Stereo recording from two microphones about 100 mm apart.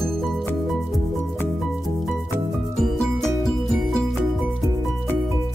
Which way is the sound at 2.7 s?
Centre (ahead or behind).